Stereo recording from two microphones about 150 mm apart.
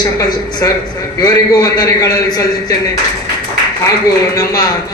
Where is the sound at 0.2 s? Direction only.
25° left (ahead or behind).